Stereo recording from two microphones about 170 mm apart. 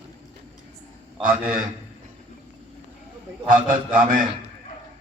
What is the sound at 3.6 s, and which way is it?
Speech, 50° right (ahead or behind).